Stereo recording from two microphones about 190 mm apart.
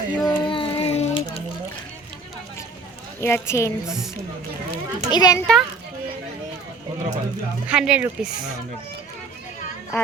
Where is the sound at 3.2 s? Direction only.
15° left (ahead or behind).